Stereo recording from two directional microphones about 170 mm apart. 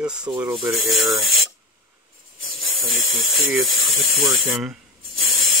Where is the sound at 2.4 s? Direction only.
Centre (ahead or behind).